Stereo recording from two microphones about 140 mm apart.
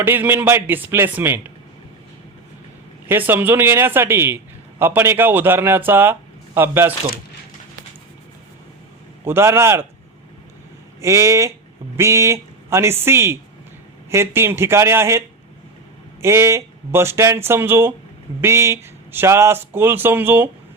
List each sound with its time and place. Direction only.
0.0 s speech: 15° right (ahead or behind)
3.1 s speech: 15° right (ahead or behind)
9.2 s speech: 15° right (ahead or behind)
11.0 s speech: 20° right (ahead or behind)
16.2 s speech: 20° right (ahead or behind)